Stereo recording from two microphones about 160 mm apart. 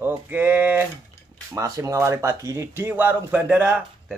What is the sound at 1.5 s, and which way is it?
Speech, 20° right (ahead or behind).